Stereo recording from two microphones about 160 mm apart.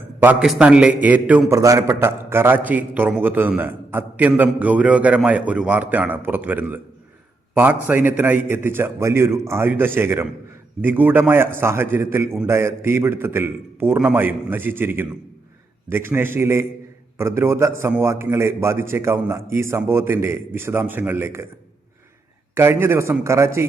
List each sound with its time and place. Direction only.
0.2 s a man's voice: 10° right (ahead or behind)
22.5 s a man's voice: 15° right (ahead or behind)